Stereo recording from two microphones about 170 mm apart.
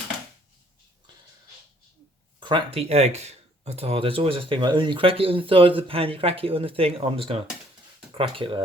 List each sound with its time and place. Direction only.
2.4 s speech: 30° right (ahead or behind)